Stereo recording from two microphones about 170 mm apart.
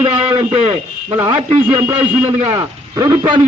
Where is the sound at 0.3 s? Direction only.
25° right (ahead or behind).